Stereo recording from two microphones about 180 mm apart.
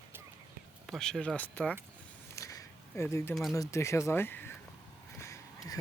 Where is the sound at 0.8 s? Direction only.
Centre (ahead or behind).